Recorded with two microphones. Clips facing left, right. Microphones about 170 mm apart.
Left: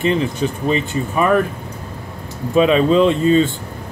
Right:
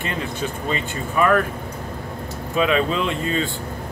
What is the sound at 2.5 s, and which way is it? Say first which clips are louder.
Speech: left 7 dB; 25° left (ahead or behind).